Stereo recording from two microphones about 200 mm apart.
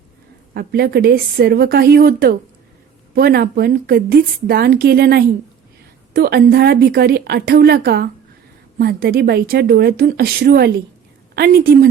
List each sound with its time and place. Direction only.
0.5 s a woman's voice: 50° right (ahead or behind)